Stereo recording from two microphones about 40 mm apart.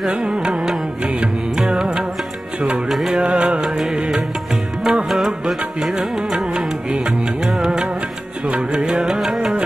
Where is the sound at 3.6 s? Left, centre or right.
Centre.